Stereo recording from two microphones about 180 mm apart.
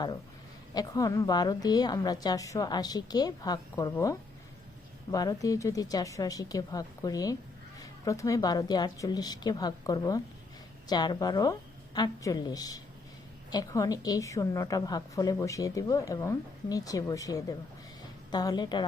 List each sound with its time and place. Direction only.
0.7 s a woman's voice: 20° left (ahead or behind)